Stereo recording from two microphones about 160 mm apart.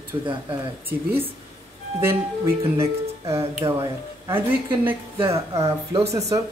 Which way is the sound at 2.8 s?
20° right (ahead or behind).